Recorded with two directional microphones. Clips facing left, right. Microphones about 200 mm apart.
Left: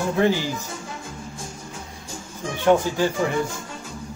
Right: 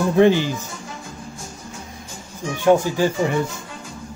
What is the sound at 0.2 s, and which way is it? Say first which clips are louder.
Speech: right 6 dB; 20° right (ahead or behind).